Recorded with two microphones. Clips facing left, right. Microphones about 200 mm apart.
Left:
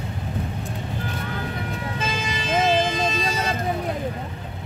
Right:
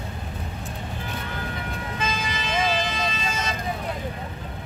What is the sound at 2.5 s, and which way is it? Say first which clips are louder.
Vehicle: left 5 dB; 40° left (ahead or behind).